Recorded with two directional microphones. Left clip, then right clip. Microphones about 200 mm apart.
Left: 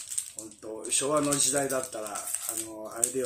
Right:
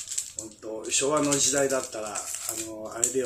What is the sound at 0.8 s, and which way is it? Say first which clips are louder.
Speech: right 2 dB; 15° left (ahead or behind).